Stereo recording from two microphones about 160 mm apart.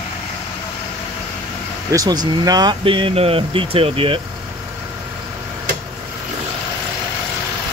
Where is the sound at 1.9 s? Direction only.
25° right (ahead or behind).